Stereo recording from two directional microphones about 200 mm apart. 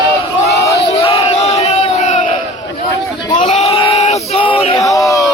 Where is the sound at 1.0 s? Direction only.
30° left (ahead or behind).